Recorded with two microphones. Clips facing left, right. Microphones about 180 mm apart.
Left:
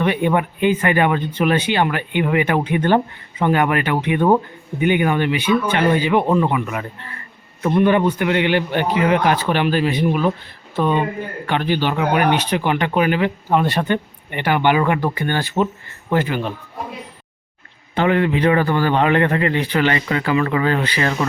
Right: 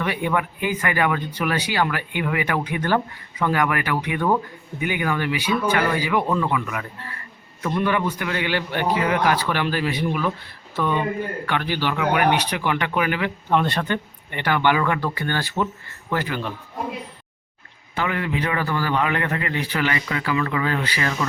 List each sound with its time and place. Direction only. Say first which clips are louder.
0.0 s speech: left 6 dB; 25° left (ahead or behind)
17.9 s speech: left 8 dB; 30° left (ahead or behind)